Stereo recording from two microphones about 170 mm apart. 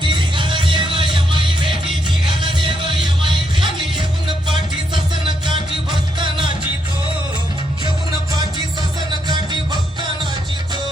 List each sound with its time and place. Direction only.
0.0 s music: 30° right (ahead or behind)
5.5 s music: 30° right (ahead or behind)